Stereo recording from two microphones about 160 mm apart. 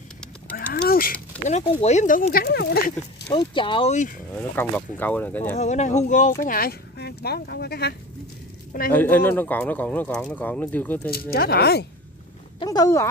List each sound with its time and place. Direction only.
0.6 s a sound: 70° left (ahead or behind)
1.4 s speech: 45° left (ahead or behind); by 2.8 s 90° left
3.3 s speech: 30° left (ahead or behind)
4.4 s speech: 10° left (ahead or behind)
5.6 s speech: 45° left (ahead or behind); by 7.9 s 85° left
8.9 s speech: 10° left (ahead or behind)
11.1 s speech: 70° left (ahead or behind); by 11.8 s 90° left
12.5 s speech: 25° left (ahead or behind)